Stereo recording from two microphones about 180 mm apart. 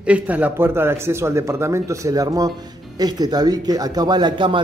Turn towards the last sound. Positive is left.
turn(degrees=-25)  # may be behind; listen again after turning